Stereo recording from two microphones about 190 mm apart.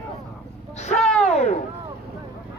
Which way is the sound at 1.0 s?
Centre (ahead or behind).